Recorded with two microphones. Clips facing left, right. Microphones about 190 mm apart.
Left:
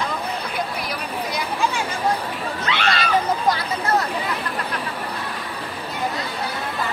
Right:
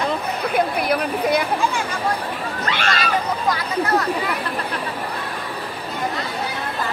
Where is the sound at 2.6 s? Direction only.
45° right (ahead or behind).